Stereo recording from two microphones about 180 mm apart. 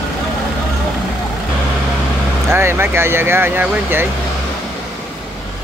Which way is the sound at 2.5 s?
15° right (ahead or behind).